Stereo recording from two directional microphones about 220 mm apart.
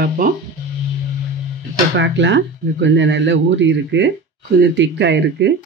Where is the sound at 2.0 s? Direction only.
55° right (ahead or behind).